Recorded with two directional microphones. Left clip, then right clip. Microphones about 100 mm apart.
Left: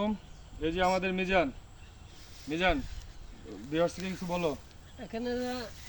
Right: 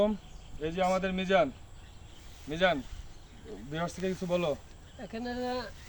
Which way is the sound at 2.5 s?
40° right (ahead or behind).